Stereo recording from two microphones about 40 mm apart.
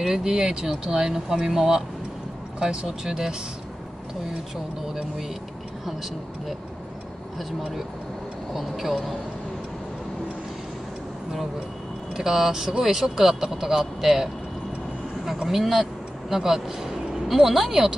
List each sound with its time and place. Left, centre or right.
0.0 s speech: centre
2.6 s speech: centre
7.3 s speech: centre
12.2 s speech: centre
15.4 s speech: centre